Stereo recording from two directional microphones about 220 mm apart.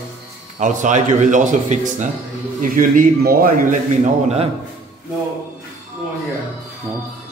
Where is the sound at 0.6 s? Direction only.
35° right (ahead or behind).